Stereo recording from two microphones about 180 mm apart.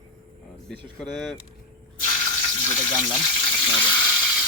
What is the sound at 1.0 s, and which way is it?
Speech, 5° left (ahead or behind).